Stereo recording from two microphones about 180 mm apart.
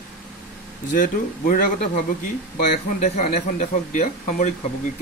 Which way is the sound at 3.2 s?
45° left (ahead or behind).